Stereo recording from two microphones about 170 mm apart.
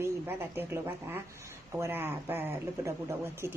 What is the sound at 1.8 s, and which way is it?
Speech, 10° right (ahead or behind).